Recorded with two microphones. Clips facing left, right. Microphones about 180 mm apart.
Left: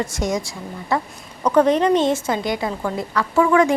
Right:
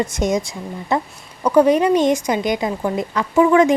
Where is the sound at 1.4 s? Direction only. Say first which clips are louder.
Right 2 dB; 10° right (ahead or behind).